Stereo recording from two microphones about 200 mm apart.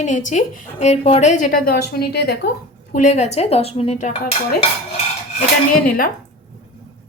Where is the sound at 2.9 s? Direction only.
35° left (ahead or behind).